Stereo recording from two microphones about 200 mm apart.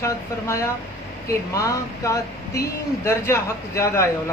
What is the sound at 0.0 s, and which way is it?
Speech, 15° left (ahead or behind).